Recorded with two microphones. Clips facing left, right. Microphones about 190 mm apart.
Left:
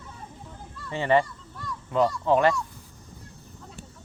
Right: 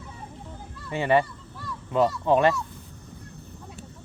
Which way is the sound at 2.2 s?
20° right (ahead or behind).